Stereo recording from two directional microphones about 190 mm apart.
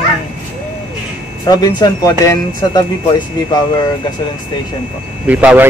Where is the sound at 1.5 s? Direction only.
20° left (ahead or behind).